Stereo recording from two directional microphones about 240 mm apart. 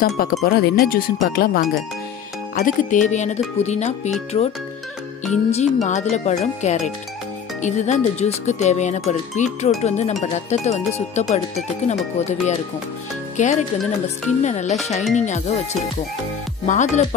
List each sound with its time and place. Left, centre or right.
0.0 s speech: left
5.5 s speech: left
16.6 s speech: left